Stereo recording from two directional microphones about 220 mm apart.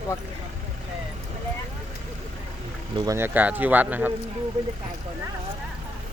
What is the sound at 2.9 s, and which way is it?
Speech, 15° right (ahead or behind).